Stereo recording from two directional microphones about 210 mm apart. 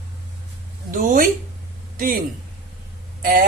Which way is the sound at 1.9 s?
40° right (ahead or behind).